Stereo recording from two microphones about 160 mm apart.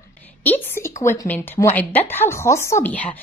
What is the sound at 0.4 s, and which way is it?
A woman's voice, 15° left (ahead or behind).